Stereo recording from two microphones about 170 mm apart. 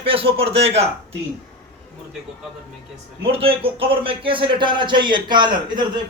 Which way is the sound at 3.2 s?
35° right (ahead or behind).